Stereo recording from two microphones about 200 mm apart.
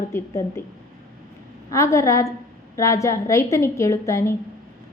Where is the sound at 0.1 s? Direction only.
15° left (ahead or behind).